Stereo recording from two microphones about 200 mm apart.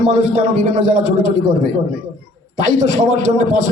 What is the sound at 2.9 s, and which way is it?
Speech, 40° right (ahead or behind).